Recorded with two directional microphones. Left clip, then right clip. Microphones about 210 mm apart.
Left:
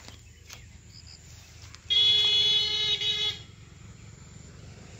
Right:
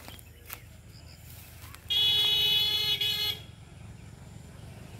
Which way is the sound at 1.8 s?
45° right (ahead or behind).